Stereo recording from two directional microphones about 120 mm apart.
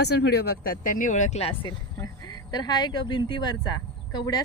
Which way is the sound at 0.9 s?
90° left.